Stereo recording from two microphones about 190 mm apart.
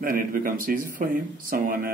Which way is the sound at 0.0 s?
45° right (ahead or behind).